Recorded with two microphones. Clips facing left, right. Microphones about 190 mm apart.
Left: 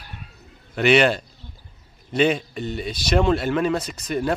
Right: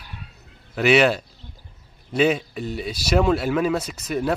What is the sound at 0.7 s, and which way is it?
Speech, centre (ahead or behind).